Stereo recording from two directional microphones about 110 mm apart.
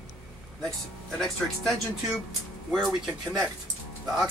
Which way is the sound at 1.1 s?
Centre (ahead or behind).